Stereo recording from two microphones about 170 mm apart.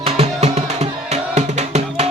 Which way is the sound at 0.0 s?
35° right (ahead or behind).